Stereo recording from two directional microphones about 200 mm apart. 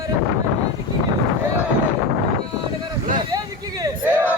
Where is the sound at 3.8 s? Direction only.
10° right (ahead or behind).